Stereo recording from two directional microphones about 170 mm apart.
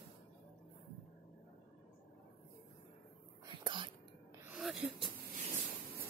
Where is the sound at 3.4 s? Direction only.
30° right (ahead or behind).